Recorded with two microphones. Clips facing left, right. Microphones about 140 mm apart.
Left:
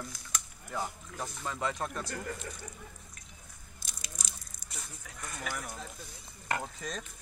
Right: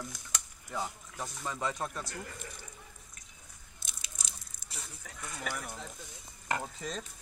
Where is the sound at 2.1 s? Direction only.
45° left (ahead or behind).